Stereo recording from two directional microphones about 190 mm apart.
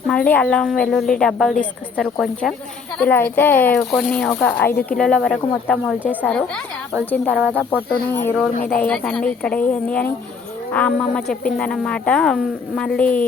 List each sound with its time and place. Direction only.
0.1 s a woman's voice: 5° left (ahead or behind)
7.3 s speech: 10° right (ahead or behind)
8.5 s a woman's voice: 45° left (ahead or behind)
8.8 s a woman's voice: 5° left (ahead or behind)